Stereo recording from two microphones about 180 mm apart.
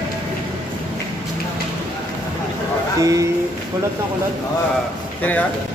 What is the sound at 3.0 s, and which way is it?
Speech, 20° right (ahead or behind).